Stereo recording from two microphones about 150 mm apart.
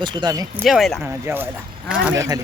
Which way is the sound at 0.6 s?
Centre (ahead or behind).